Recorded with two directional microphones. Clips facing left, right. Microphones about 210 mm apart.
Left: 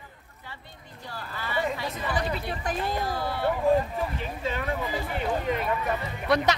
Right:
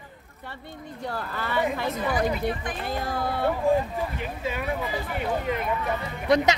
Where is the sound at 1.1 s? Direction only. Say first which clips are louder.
Right 3 dB; 55° right (ahead or behind).